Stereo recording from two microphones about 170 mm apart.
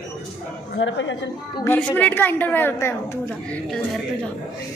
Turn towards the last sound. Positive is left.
turn(degrees=5)  # may be behind; listen again after turning